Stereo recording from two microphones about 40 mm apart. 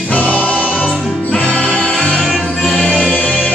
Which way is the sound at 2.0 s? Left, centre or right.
Centre.